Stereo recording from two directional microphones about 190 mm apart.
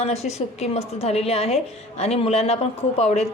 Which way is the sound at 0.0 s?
35° left (ahead or behind).